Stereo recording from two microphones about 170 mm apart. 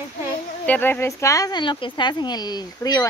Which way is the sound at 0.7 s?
10° left (ahead or behind).